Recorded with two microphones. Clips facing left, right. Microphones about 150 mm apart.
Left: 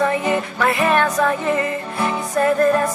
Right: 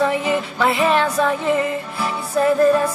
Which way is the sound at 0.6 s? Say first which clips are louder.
Right 1 dB; 20° right (ahead or behind).